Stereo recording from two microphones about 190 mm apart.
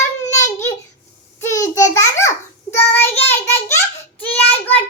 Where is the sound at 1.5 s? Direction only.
20° left (ahead or behind).